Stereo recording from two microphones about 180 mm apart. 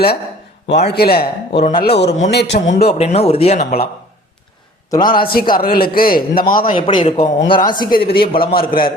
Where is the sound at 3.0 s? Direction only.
35° left (ahead or behind).